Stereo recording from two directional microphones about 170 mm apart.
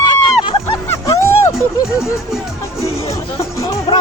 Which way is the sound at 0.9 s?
15° left (ahead or behind).